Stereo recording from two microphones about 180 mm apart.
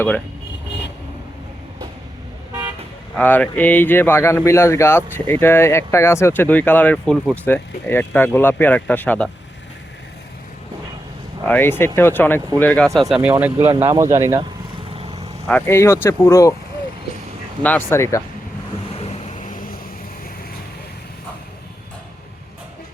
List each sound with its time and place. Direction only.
3.2 s speech: 10° left (ahead or behind)
11.4 s speech: 10° left (ahead or behind)
13.7 s speech: 30° right (ahead or behind)
14.0 s speech: 15° right (ahead or behind)
14.9 s vehicle: 35° right (ahead or behind)
15.4 s speech: 10° left (ahead or behind)
17.6 s speech: 10° left (ahead or behind)
18.9 s vehicle: 35° left (ahead or behind); by 19.8 s 50° left (ahead or behind)